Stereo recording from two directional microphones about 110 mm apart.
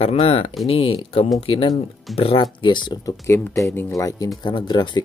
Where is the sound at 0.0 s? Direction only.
65° left (ahead or behind); by 3.2 s 45° left (ahead or behind).